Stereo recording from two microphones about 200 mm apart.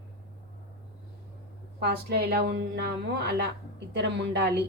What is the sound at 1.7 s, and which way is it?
Speech, 50° right (ahead or behind).